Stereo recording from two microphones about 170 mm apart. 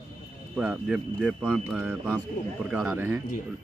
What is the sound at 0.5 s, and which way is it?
Speech, 5° right (ahead or behind).